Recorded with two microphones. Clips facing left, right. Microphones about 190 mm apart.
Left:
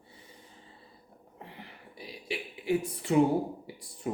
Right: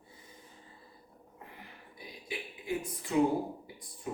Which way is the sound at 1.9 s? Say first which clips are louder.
Left 5 dB; 75° left (ahead or behind).